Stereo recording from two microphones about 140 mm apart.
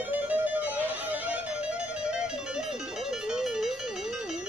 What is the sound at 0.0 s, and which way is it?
Music, 10° right (ahead or behind).